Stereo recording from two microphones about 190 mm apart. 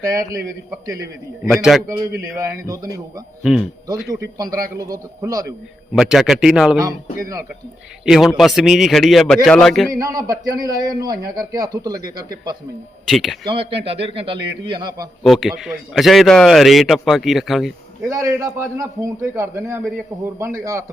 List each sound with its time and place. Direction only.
0.0 s a man's voice: 15° right (ahead or behind)
1.5 s a man's voice: centre (ahead or behind)
2.4 s a man's voice: 20° right (ahead or behind)
4.9 s a man's voice: 20° right (ahead or behind)
5.9 s a man's voice: centre (ahead or behind)
8.0 s a man's voice: centre (ahead or behind)
9.9 s a man's voice: 15° right (ahead or behind)
13.1 s a man's voice: centre (ahead or behind)
13.4 s a man's voice: 25° right (ahead or behind)
15.2 s a man's voice: centre (ahead or behind)
18.1 s a man's voice: 15° right (ahead or behind)